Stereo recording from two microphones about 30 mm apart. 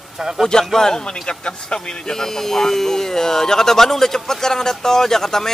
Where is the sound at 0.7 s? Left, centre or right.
Centre.